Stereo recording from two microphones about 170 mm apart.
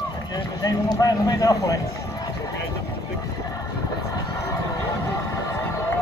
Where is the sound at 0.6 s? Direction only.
20° left (ahead or behind).